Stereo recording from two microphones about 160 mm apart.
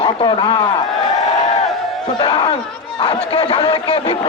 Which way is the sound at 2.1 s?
30° left (ahead or behind).